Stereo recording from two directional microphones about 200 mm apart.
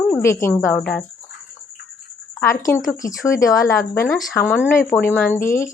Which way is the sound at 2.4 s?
10° left (ahead or behind).